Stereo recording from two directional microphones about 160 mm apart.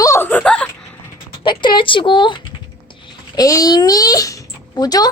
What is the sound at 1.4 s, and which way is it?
A child's voice, 30° left (ahead or behind).